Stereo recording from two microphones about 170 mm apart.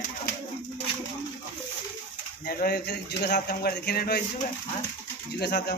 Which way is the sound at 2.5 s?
60° left (ahead or behind).